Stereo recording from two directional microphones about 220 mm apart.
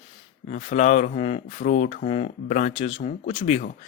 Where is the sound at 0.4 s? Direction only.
35° left (ahead or behind).